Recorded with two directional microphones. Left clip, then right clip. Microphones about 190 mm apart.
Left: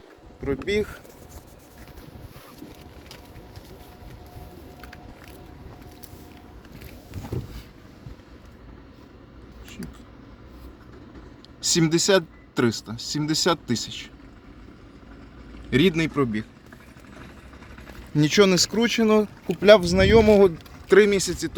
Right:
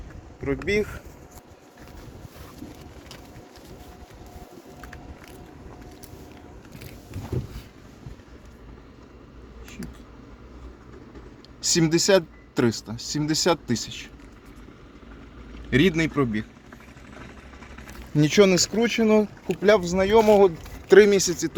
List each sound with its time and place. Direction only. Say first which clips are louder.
0.4 s speech: even; 10° left (ahead or behind)
11.6 s speech: even; 5° left (ahead or behind)
15.7 s speech: even; 5° left (ahead or behind)
18.1 s speech: even; 5° left (ahead or behind)
18.5 s speech: even; 25° left (ahead or behind)
19.5 s speech: left 5 dB; 45° left (ahead or behind)
20.8 s speech: right 2 dB; centre (ahead or behind)